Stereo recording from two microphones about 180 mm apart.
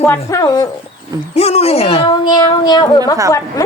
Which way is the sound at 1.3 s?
35° left (ahead or behind).